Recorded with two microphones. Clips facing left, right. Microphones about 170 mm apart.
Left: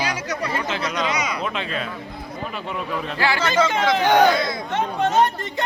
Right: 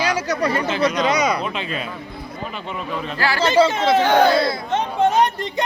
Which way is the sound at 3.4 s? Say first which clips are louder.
Right 6 dB; 30° right (ahead or behind).